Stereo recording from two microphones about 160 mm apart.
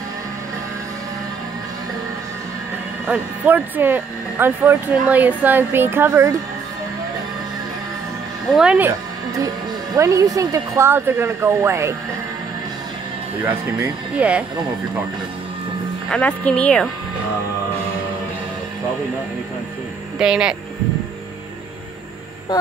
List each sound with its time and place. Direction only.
3.1 s speech: 10° right (ahead or behind)
8.5 s speech: 5° right (ahead or behind)
13.5 s speech: 10° right (ahead or behind)
16.1 s speech: 5° left (ahead or behind)
20.2 s speech: 5° right (ahead or behind)